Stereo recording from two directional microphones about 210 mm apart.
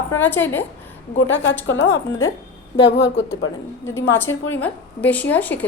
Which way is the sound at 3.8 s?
10° left (ahead or behind).